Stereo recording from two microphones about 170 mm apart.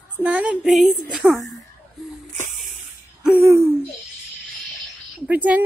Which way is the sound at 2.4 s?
50° right (ahead or behind).